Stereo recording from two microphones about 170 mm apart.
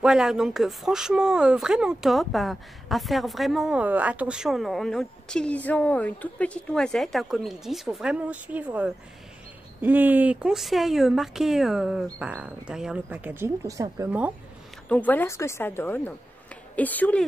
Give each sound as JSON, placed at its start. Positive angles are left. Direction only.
{"t": 0.0, "sound": "speech", "side_deg": -5}
{"t": 14.9, "sound": "a woman's voice", "side_deg": 10}